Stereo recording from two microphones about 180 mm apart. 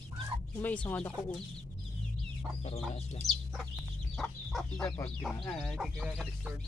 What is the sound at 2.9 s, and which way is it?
Speech, 40° left (ahead or behind).